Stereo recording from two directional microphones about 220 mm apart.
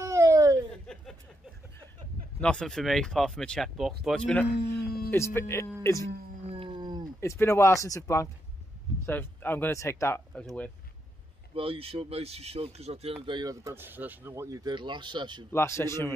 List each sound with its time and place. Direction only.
0.0 s a sound: 15° right (ahead or behind)
2.4 s speech: 5° left (ahead or behind)
4.6 s a sound: 45° left (ahead or behind)
5.1 s speech: 10° left (ahead or behind)
6.5 s howl: 20° right (ahead or behind)
7.2 s speech: 10° left (ahead or behind)
11.5 s speech: 25° right (ahead or behind)
15.5 s speech: 10° left (ahead or behind)